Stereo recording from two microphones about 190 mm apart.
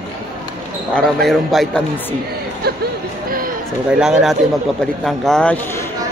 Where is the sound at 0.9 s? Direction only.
Centre (ahead or behind).